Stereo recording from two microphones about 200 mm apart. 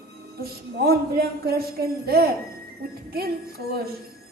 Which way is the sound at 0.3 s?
50° right (ahead or behind).